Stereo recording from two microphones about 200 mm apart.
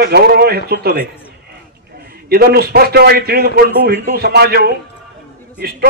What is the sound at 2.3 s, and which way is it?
A man's voice, 50° right (ahead or behind).